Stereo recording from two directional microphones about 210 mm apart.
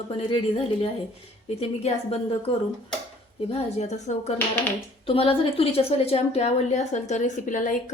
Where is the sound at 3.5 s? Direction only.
30° left (ahead or behind).